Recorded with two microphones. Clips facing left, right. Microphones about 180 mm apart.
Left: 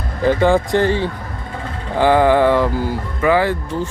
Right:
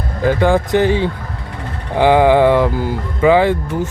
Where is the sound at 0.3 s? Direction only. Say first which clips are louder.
Even; centre (ahead or behind).